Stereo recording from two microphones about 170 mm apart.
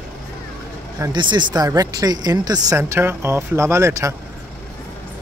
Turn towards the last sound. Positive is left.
turn(degrees=-15)  # may be behind; listen again after turning